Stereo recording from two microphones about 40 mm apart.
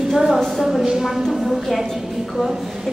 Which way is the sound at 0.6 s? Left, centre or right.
Centre.